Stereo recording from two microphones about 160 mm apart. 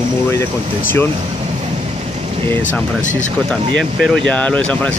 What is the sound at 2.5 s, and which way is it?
Speech, 10° left (ahead or behind).